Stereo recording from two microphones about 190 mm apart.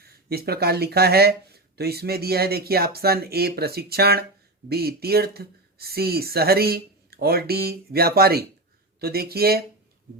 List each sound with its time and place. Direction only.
0.0 s speech: 55° right (ahead or behind)